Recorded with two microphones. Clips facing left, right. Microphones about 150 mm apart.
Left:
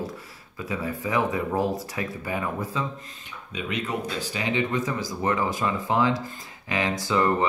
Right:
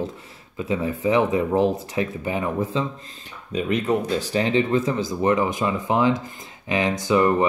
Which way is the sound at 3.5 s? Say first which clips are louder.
Right 8 dB; 40° right (ahead or behind).